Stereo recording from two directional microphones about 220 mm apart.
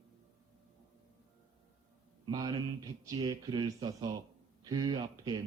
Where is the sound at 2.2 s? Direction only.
15° right (ahead or behind).